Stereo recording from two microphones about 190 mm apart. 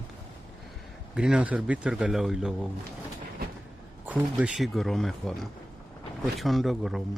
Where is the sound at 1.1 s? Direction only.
5° right (ahead or behind).